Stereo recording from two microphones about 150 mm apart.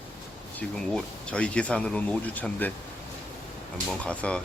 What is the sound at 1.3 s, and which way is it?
Speech, 10° left (ahead or behind).